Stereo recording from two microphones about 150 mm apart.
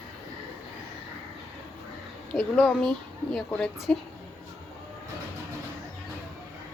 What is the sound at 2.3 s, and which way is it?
A woman's voice, 5° left (ahead or behind).